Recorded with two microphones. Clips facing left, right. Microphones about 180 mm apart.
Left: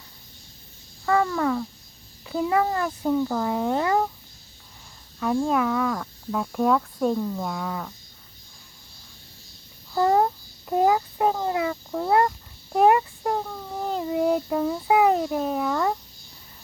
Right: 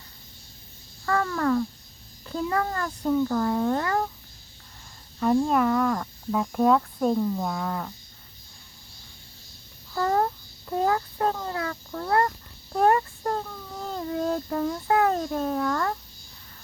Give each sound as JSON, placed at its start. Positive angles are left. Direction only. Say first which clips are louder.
{"t": 1.0, "sound": "a child's voice", "louder": "left 2 dB", "side_deg": 10}
{"t": 5.2, "sound": "speech", "louder": "right 1 dB", "side_deg": 0}
{"t": 9.9, "sound": "babbling", "louder": "left 4 dB", "side_deg": 15}
{"t": 10.7, "sound": "a child's voice", "louder": "left 4 dB", "side_deg": 15}